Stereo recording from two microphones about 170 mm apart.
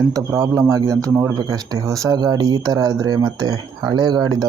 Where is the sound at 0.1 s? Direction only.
20° right (ahead or behind).